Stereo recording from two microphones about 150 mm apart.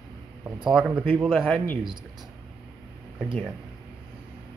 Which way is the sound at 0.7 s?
10° right (ahead or behind).